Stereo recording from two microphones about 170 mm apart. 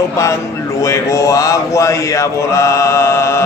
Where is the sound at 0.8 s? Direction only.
20° left (ahead or behind).